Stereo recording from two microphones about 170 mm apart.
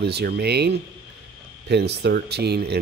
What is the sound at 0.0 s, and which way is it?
Speech, 75° right (ahead or behind).